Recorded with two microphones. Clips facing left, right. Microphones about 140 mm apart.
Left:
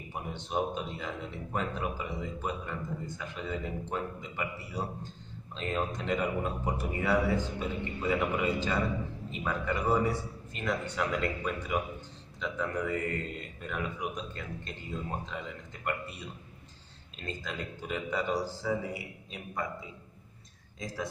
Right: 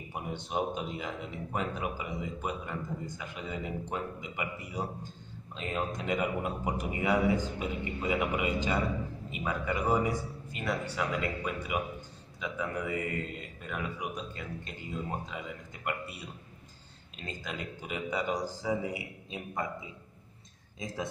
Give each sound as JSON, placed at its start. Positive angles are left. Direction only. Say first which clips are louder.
{"t": 0.1, "sound": "speech", "louder": "left 1 dB", "side_deg": -10}
{"t": 17.4, "sound": "speech", "louder": "right 2 dB", "side_deg": -10}
{"t": 20.8, "sound": "a man's voice", "louder": "even", "side_deg": -20}